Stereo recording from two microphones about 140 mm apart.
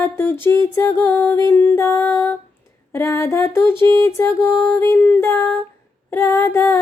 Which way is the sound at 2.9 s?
20° left (ahead or behind).